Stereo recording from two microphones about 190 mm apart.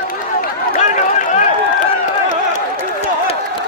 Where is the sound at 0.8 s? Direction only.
40° left (ahead or behind).